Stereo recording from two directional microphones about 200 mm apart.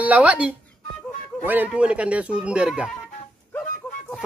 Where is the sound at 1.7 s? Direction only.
5° right (ahead or behind).